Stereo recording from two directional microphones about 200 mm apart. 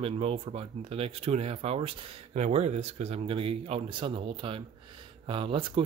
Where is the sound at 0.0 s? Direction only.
30° right (ahead or behind).